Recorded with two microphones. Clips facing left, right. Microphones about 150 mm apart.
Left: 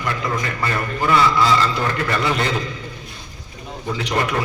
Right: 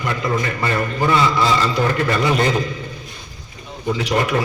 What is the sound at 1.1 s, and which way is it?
A man's voice, 20° right (ahead or behind).